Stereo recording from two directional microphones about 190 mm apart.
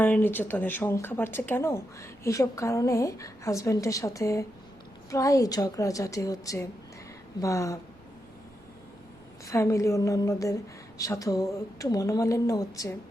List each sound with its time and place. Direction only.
0.0 s speech: 10° left (ahead or behind)
9.5 s speech: 15° left (ahead or behind)